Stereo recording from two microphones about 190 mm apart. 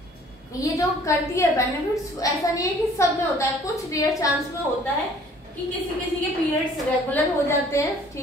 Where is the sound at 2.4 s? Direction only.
15° left (ahead or behind).